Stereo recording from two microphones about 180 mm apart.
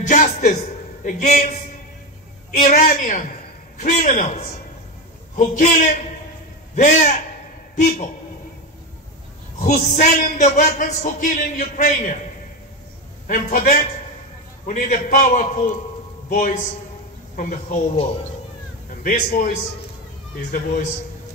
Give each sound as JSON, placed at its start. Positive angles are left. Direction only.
{"t": 0.0, "sound": "music", "side_deg": 40}
{"t": 1.0, "sound": "a man's voice", "side_deg": 40}
{"t": 2.5, "sound": "a man's voice", "side_deg": 45}
{"t": 5.6, "sound": "a man's voice", "side_deg": 45}
{"t": 9.6, "sound": "a man's voice", "side_deg": 45}
{"t": 13.3, "sound": "a man's voice", "side_deg": 55}
{"t": 19.0, "sound": "a man's voice", "side_deg": 50}